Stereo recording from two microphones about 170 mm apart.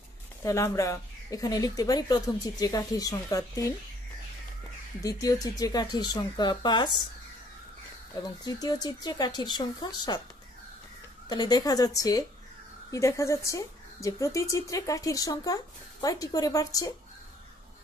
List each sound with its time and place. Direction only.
0.4 s speech: 20° left (ahead or behind)
5.0 s speech: 20° left (ahead or behind)
8.2 s speech: 20° left (ahead or behind)
11.2 s speech: 25° left (ahead or behind)